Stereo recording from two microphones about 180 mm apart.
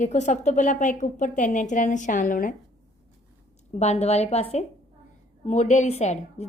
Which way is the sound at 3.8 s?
35° left (ahead or behind).